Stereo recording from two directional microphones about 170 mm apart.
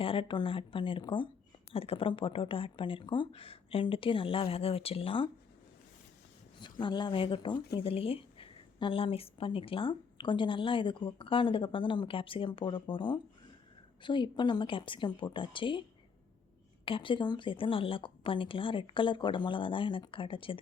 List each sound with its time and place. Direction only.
0.0 s a woman's voice: 30° left (ahead or behind)
6.6 s a woman's voice: 25° left (ahead or behind)
16.8 s a woman's voice: 30° left (ahead or behind)